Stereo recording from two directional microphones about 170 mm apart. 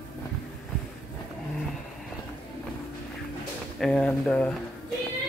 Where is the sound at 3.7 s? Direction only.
5° left (ahead or behind).